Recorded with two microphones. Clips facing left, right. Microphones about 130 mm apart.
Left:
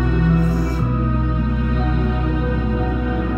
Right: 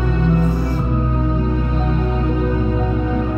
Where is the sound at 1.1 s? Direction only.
30° right (ahead or behind).